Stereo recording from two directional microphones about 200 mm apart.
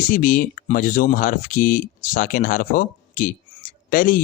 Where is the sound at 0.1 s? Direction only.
45° left (ahead or behind).